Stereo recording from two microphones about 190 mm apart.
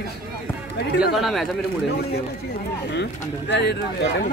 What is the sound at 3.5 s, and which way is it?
Speech, 60° left (ahead or behind).